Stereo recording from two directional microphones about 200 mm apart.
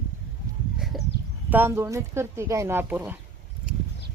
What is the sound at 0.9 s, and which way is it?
Speech, centre (ahead or behind).